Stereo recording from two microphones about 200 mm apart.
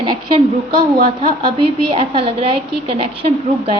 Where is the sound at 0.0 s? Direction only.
20° right (ahead or behind).